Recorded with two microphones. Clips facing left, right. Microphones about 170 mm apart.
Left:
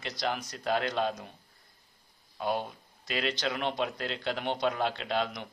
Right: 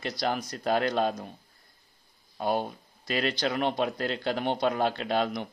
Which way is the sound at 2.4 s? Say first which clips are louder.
Right 3 dB; 40° right (ahead or behind).